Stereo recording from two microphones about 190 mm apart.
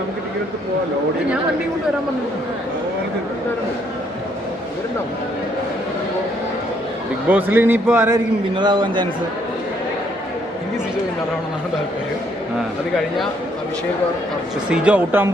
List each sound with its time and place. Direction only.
7.3 s a man's voice: 10° right (ahead or behind)
8.5 s a man's voice: 25° right (ahead or behind)
14.7 s a man's voice: 5° right (ahead or behind)